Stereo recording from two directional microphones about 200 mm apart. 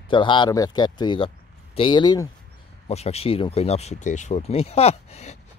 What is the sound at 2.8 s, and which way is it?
Speech, 30° left (ahead or behind).